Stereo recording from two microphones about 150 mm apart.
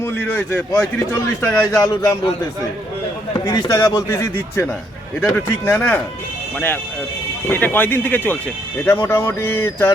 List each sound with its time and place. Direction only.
0.0 s speech: 15° left (ahead or behind)
3.3 s speech: 25° left (ahead or behind)
7.4 s speech: 15° left (ahead or behind)